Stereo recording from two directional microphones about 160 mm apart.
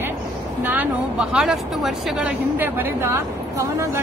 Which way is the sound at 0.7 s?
10° right (ahead or behind).